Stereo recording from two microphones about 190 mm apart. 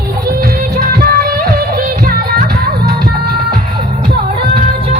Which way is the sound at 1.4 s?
50° right (ahead or behind).